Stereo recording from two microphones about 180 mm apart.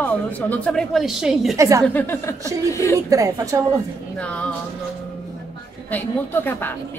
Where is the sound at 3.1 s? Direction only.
20° right (ahead or behind).